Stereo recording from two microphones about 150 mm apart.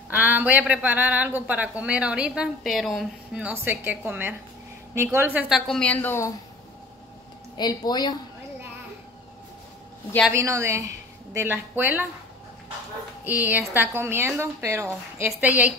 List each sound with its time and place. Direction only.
0.1 s a woman's voice: 10° right (ahead or behind)
5.7 s a woman's voice: 5° left (ahead or behind)
7.5 s speech: 30° left (ahead or behind)
10.3 s a woman's voice: 20° right (ahead or behind)
13.2 s a woman's voice: 10° right (ahead or behind)